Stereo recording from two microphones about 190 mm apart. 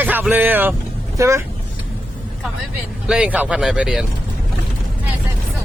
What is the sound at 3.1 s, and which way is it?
Speech, 5° right (ahead or behind).